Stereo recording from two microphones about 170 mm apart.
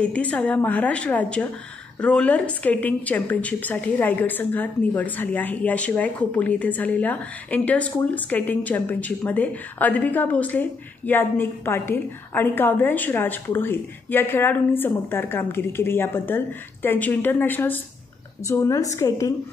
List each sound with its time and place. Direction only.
0.0 s a woman's voice: 5° left (ahead or behind)